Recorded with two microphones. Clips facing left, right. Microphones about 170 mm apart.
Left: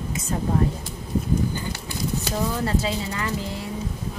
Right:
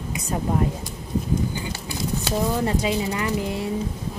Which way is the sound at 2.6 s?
20° right (ahead or behind).